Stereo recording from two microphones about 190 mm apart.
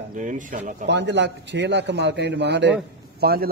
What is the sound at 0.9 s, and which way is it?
Speech, 65° right (ahead or behind).